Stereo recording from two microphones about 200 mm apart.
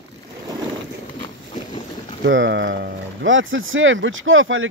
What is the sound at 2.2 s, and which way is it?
Speech, 65° right (ahead or behind).